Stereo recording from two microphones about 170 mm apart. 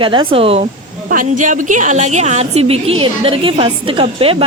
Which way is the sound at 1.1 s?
50° right (ahead or behind).